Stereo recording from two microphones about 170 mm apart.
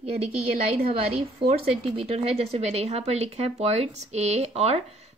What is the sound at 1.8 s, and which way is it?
Speech, 35° right (ahead or behind).